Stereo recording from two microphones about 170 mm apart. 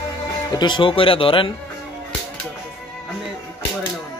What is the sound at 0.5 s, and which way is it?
Speech, 25° left (ahead or behind).